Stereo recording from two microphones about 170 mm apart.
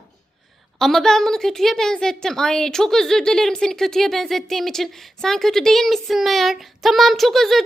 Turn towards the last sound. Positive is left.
turn(degrees=0)  # may be behind; listen again after turning